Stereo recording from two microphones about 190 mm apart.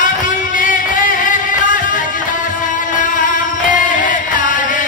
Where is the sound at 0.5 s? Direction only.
45° left (ahead or behind).